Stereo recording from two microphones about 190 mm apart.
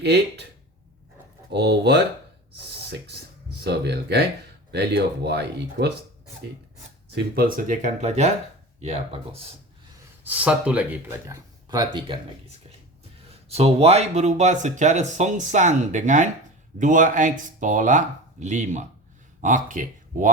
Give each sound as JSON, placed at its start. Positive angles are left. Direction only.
{"t": 0.0, "sound": "speech", "side_deg": -60}
{"t": 1.5, "sound": "speech", "side_deg": -65}
{"t": 7.3, "sound": "speech", "side_deg": -45}
{"t": 10.2, "sound": "speech", "side_deg": -10}
{"t": 13.3, "sound": "speech", "side_deg": -30}